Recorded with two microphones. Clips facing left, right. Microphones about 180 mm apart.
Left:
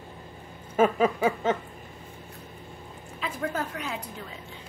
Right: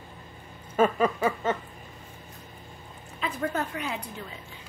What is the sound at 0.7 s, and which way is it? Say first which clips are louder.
Speech: left 1 dB; 10° left (ahead or behind).